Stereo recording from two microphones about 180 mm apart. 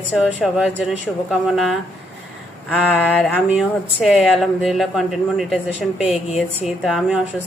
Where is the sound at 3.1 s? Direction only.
5° left (ahead or behind).